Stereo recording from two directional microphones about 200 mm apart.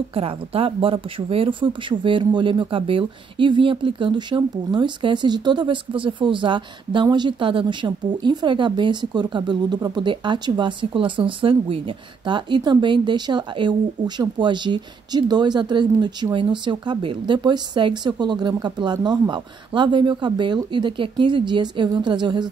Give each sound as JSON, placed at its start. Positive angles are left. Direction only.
{"t": 0.1, "sound": "speech", "side_deg": -30}